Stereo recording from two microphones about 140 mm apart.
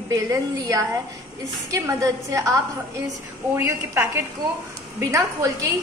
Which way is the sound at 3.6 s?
15° right (ahead or behind).